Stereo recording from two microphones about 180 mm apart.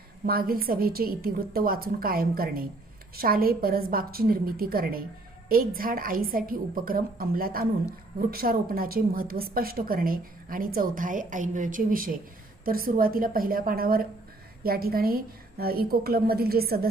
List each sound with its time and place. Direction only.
0.3 s a woman's voice: 55° right (ahead or behind)